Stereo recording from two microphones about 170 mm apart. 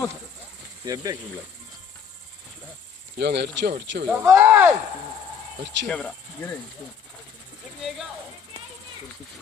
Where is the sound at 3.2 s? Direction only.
75° right (ahead or behind).